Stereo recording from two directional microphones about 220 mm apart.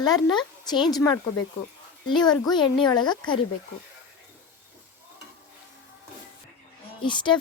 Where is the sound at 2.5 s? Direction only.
20° left (ahead or behind).